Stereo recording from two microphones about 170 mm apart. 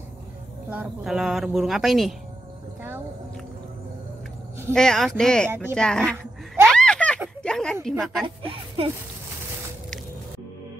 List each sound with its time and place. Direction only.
1.0 s speech: centre (ahead or behind)
4.7 s speech: 5° left (ahead or behind)
6.5 s a sound: centre (ahead or behind)
8.0 s speech: centre (ahead or behind)
8.4 s speech: 30° right (ahead or behind)